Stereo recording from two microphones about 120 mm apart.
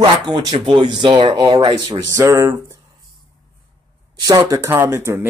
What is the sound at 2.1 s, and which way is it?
Speech, 25° right (ahead or behind).